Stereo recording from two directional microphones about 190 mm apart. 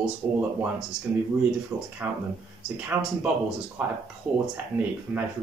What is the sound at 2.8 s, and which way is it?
Speech, 10° right (ahead or behind).